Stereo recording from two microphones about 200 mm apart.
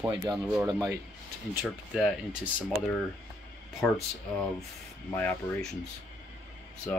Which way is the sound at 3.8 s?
10° left (ahead or behind).